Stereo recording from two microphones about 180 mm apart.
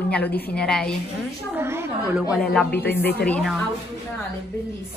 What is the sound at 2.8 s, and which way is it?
Speech, 10° left (ahead or behind).